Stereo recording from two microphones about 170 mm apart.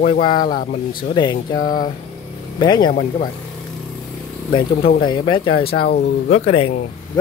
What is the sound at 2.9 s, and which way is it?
Speech, 50° left (ahead or behind).